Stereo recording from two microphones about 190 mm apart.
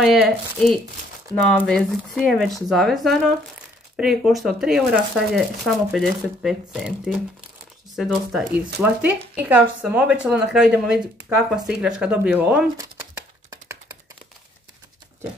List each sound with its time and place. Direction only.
0.0 s speech: centre (ahead or behind)
13.5 s computer keyboard: 20° right (ahead or behind)